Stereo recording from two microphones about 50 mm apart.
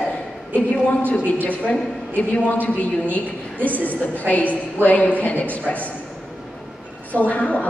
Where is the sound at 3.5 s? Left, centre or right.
Right.